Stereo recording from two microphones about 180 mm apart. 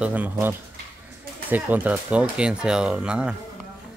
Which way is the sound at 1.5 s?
10° right (ahead or behind).